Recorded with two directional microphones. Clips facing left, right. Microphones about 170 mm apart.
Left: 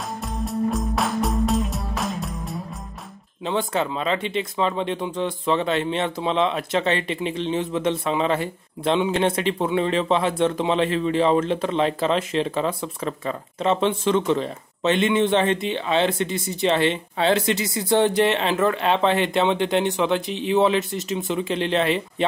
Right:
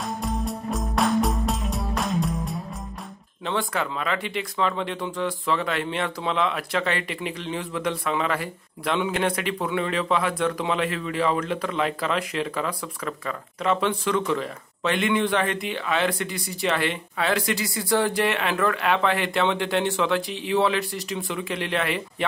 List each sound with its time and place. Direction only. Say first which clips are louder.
0.2 s music: left 3 dB; centre (ahead or behind)
3.4 s speech: left 3 dB; 20° left (ahead or behind)